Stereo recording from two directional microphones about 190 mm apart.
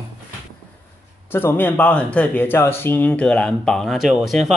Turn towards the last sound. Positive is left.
turn(degrees=0)  # may be behind; listen again after turning